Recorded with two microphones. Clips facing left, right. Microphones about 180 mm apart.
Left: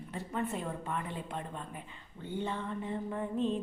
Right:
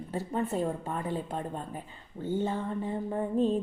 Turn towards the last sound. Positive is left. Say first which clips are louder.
# right 5 dB
turn(degrees=-35)  # may be behind; listen again after turning